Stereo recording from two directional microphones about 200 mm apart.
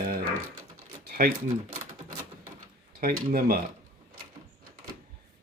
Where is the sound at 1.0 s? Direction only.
45° right (ahead or behind).